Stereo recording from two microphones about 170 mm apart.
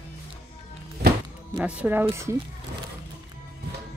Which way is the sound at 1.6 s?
10° right (ahead or behind).